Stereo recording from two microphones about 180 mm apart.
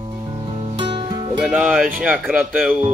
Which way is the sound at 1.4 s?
5° right (ahead or behind).